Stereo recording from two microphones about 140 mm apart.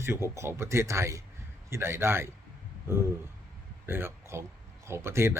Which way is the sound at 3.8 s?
15° right (ahead or behind).